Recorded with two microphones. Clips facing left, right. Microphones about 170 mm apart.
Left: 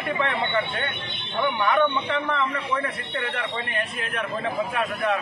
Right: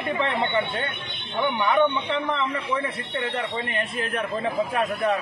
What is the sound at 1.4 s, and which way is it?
Speech, centre (ahead or behind).